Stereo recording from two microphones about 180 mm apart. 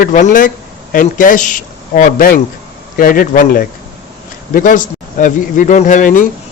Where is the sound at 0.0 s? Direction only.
45° left (ahead or behind).